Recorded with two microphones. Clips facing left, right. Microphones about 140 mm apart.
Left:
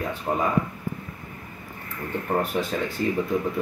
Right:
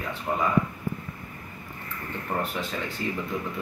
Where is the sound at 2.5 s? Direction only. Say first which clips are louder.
Left 6 dB; 40° left (ahead or behind).